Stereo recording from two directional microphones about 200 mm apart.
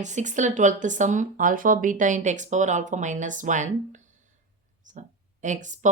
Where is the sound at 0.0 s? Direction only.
35° right (ahead or behind).